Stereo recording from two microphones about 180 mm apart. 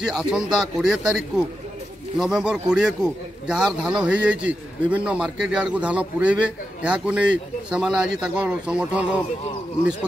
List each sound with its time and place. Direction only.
0.0 s a man's voice: 5° right (ahead or behind)